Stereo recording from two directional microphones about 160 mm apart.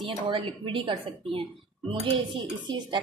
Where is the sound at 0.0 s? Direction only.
30° right (ahead or behind).